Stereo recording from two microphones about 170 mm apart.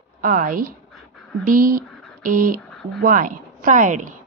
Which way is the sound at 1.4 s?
55° right (ahead or behind).